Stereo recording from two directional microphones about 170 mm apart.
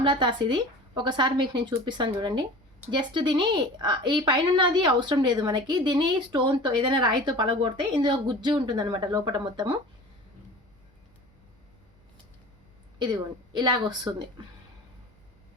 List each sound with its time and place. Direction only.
0.0 s a woman's voice: 30° right (ahead or behind)
13.6 s a woman's voice: 25° right (ahead or behind)